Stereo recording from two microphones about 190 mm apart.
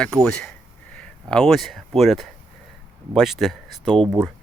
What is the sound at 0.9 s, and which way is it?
Speech, 5° left (ahead or behind).